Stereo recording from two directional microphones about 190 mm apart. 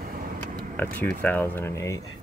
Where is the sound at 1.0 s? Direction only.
10° left (ahead or behind).